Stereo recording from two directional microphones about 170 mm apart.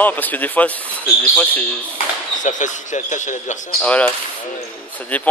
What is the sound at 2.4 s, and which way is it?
A man's voice, 45° left (ahead or behind).